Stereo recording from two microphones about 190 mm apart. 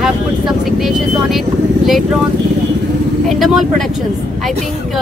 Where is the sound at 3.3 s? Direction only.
Centre (ahead or behind).